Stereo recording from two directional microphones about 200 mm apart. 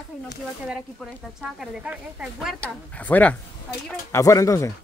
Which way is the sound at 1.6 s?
5° right (ahead or behind).